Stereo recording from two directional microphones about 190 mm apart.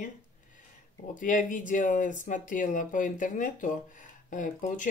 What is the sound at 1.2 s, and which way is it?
Speech, 45° left (ahead or behind).